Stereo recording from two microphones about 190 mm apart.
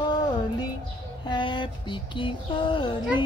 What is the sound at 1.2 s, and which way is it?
Speech, 25° left (ahead or behind).